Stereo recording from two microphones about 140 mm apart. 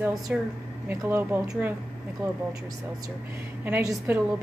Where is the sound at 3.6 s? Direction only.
15° right (ahead or behind).